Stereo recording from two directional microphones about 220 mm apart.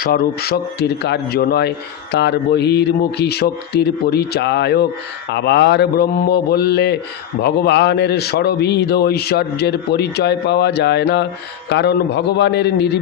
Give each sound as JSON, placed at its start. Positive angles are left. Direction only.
{"t": 0.0, "sound": "a man's voice", "side_deg": 45}